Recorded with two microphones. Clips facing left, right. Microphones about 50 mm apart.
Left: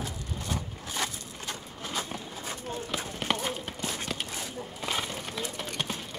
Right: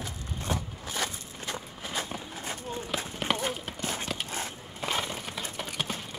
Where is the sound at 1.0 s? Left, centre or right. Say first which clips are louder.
Even; centre.